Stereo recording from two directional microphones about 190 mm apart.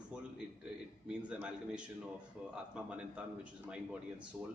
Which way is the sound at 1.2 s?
5° right (ahead or behind).